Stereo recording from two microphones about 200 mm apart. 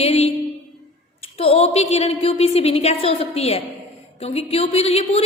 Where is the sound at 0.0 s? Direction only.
30° left (ahead or behind).